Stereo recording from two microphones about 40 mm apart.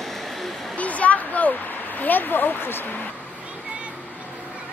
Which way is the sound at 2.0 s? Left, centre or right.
Left.